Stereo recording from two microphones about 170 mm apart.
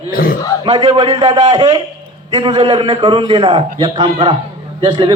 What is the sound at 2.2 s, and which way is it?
A man's voice, 25° right (ahead or behind).